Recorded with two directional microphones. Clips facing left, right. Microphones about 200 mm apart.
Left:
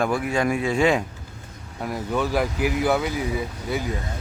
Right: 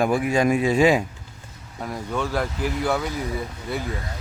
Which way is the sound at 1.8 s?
5° left (ahead or behind).